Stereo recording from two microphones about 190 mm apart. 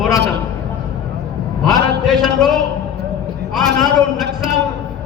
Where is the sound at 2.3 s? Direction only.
Centre (ahead or behind).